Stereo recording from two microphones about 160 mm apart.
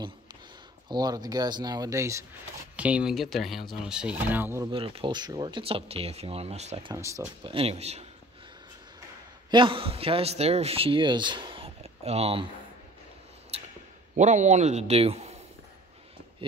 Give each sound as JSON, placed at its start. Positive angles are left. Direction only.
{"t": 0.8, "sound": "speech", "side_deg": -25}
{"t": 2.7, "sound": "speech", "side_deg": -10}
{"t": 4.6, "sound": "a man's voice", "side_deg": -35}
{"t": 6.9, "sound": "speech", "side_deg": -20}
{"t": 7.4, "sound": "a man's voice", "side_deg": -35}
{"t": 9.5, "sound": "a man's voice", "side_deg": -30}
{"t": 13.5, "sound": "a sound", "side_deg": -40}
{"t": 14.1, "sound": "a man's voice", "side_deg": -50}